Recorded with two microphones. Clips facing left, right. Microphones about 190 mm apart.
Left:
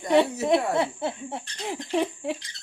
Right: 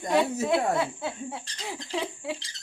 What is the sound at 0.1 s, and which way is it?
Speech, 20° left (ahead or behind).